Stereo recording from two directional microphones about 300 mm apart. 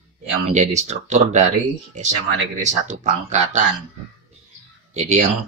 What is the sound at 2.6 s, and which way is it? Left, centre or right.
Speech, right.